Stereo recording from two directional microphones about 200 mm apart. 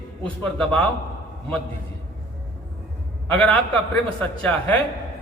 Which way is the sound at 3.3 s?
10° left (ahead or behind).